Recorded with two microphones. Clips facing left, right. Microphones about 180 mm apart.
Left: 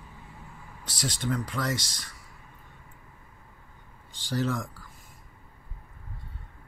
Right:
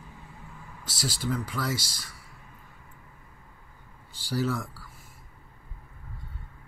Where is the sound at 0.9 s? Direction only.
5° right (ahead or behind).